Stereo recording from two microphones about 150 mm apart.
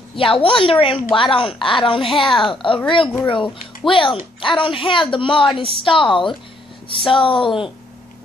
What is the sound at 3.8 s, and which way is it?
A woman's voice, 35° left (ahead or behind).